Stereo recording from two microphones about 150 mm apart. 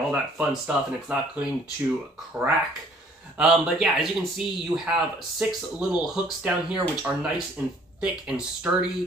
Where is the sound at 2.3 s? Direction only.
20° right (ahead or behind).